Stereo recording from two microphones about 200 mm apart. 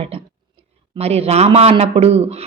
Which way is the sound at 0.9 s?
30° right (ahead or behind).